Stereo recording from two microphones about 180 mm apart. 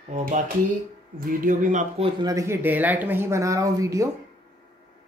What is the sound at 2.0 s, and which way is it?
Speech, 20° right (ahead or behind).